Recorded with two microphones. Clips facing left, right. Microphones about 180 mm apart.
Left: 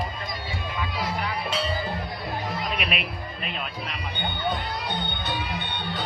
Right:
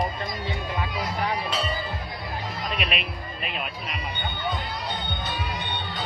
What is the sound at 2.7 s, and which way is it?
Music, centre (ahead or behind).